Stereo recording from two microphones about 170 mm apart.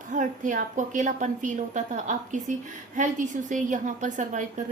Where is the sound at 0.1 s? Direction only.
50° right (ahead or behind).